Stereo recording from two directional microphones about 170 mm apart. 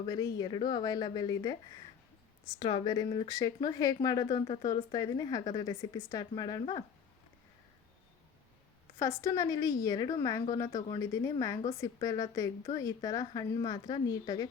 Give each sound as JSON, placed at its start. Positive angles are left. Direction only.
{"t": 0.0, "sound": "speech", "side_deg": 20}
{"t": 2.6, "sound": "speech", "side_deg": 30}
{"t": 9.0, "sound": "speech", "side_deg": 20}